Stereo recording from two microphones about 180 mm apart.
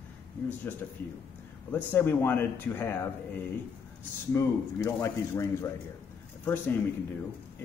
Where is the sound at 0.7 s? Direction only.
10° left (ahead or behind).